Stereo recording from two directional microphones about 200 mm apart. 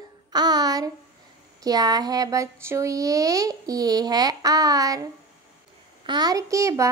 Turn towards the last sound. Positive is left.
turn(degrees=-15)  # may be behind; listen again after turning